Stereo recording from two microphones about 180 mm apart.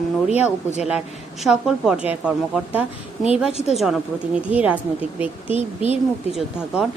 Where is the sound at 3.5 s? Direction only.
35° left (ahead or behind).